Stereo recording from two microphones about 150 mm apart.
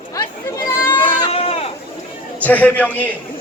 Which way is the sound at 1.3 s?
40° left (ahead or behind).